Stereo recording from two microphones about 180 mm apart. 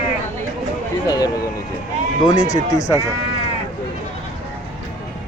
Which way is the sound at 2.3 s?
45° left (ahead or behind).